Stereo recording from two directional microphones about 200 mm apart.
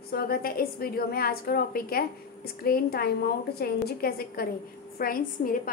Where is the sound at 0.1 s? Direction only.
50° left (ahead or behind).